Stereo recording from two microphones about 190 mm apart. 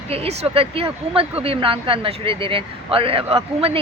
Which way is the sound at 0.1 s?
30° right (ahead or behind).